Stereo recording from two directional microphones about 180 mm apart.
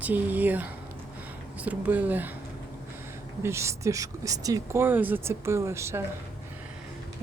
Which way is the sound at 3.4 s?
15° right (ahead or behind).